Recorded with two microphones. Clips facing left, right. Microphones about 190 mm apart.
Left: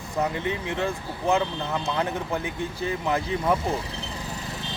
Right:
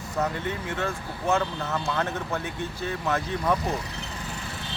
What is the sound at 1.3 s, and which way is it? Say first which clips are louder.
Speech: left 2 dB; 15° left (ahead or behind).